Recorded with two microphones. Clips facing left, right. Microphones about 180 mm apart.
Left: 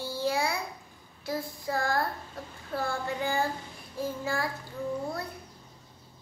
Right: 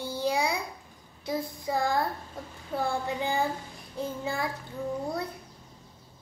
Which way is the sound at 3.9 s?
20° right (ahead or behind).